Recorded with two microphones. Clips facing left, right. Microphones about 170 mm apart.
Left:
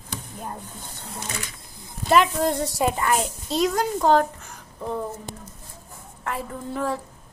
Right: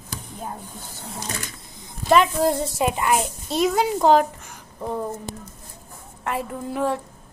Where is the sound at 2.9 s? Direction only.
15° right (ahead or behind).